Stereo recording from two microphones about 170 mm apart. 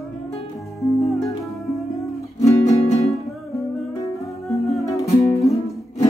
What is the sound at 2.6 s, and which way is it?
Music, 40° left (ahead or behind).